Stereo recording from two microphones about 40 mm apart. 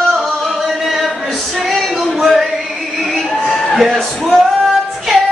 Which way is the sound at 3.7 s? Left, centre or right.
Centre.